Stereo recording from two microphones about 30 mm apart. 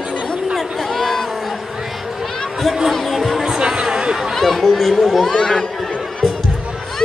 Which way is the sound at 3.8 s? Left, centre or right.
Right.